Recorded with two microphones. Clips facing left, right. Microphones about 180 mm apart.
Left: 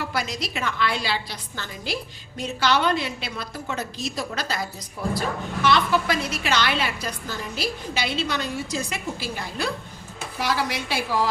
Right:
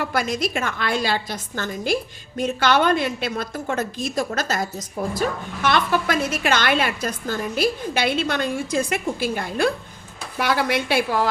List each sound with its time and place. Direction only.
0.0 s a woman's voice: 50° right (ahead or behind)